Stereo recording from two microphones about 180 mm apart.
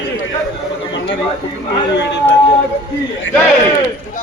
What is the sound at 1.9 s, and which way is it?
Speech, 75° left (ahead or behind).